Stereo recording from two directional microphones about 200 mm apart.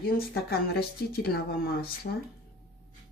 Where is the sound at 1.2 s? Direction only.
50° left (ahead or behind).